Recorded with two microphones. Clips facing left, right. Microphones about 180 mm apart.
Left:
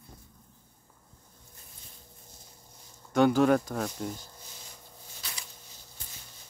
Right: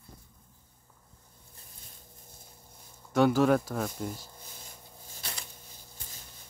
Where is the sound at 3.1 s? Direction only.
Centre (ahead or behind).